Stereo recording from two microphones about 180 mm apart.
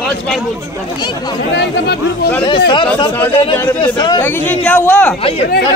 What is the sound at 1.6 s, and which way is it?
Speech, 65° left (ahead or behind).